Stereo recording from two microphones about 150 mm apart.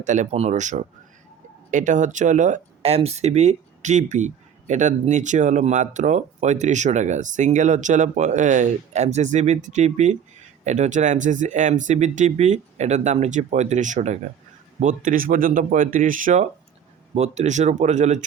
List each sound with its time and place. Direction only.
0.0 s speech: 55° right (ahead or behind)